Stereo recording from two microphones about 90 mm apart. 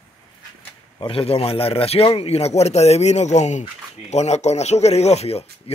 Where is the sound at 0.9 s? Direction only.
80° left.